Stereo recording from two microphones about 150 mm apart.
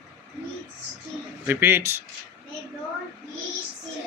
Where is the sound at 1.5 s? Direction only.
15° right (ahead or behind).